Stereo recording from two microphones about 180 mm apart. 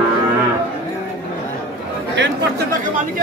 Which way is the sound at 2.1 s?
85° right.